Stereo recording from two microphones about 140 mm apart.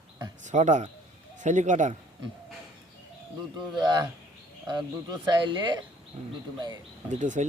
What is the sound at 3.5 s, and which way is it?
Speech, 30° right (ahead or behind).